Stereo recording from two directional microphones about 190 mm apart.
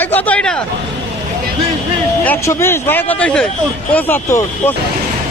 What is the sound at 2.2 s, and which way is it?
Speech, 15° left (ahead or behind).